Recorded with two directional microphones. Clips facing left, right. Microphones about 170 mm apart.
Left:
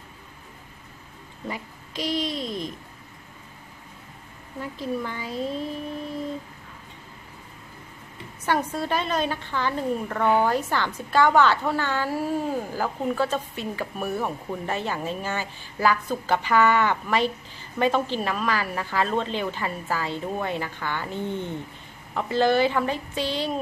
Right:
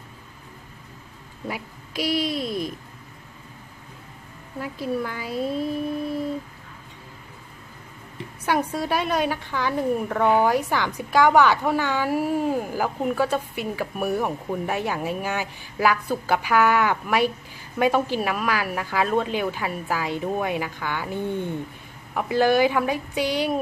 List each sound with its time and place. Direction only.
1.5 s a woman's voice: 10° right (ahead or behind)
4.6 s a woman's voice: 10° right (ahead or behind)
8.5 s a woman's voice: 10° right (ahead or behind)